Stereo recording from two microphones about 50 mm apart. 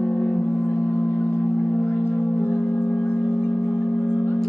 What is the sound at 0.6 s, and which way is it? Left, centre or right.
Music, left.